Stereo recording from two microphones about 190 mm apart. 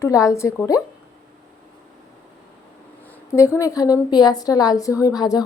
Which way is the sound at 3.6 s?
20° left (ahead or behind).